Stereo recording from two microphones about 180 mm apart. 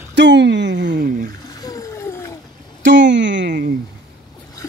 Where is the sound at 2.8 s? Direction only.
85° right.